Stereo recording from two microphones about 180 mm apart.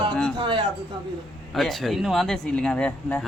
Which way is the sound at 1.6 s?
Centre (ahead or behind).